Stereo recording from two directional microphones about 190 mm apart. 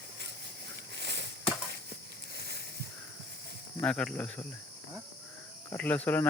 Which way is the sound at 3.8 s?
5° left (ahead or behind).